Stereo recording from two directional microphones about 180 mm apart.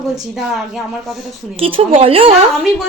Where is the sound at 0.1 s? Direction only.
Centre (ahead or behind).